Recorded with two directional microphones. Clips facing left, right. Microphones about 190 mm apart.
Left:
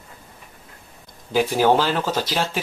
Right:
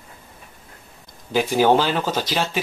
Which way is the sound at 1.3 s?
5° left (ahead or behind).